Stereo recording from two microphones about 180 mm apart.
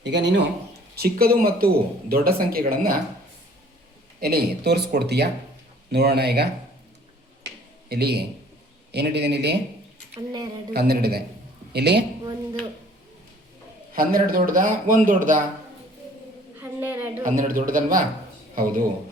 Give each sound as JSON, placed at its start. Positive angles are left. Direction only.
{"t": 0.0, "sound": "a man's voice", "side_deg": -75}
{"t": 0.9, "sound": "speech", "side_deg": -60}
{"t": 4.2, "sound": "speech", "side_deg": -60}
{"t": 7.9, "sound": "a man's voice", "side_deg": -65}
{"t": 10.2, "sound": "speech", "side_deg": -20}
{"t": 10.8, "sound": "a man's voice", "side_deg": -60}
{"t": 13.9, "sound": "a man's voice", "side_deg": -55}
{"t": 16.6, "sound": "a sound", "side_deg": -10}
{"t": 17.2, "sound": "a man's voice", "side_deg": -50}